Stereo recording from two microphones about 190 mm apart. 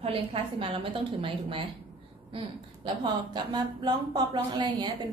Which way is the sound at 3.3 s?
20° right (ahead or behind).